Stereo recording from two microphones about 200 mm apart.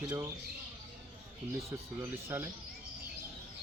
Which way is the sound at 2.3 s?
10° right (ahead or behind).